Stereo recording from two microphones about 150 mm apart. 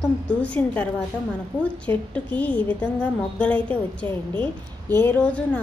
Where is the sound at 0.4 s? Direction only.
10° left (ahead or behind).